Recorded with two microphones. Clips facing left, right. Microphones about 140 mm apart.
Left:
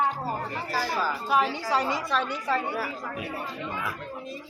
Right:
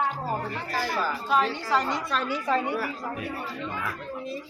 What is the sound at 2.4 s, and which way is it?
Speech, 15° right (ahead or behind).